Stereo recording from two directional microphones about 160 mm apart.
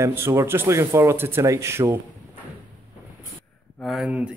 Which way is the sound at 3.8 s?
Centre (ahead or behind).